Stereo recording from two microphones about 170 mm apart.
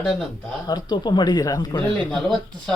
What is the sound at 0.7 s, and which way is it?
Speech, 25° left (ahead or behind).